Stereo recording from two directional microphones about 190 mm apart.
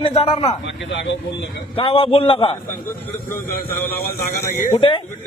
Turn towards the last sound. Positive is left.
turn(degrees=15)  # may be behind; listen again after turning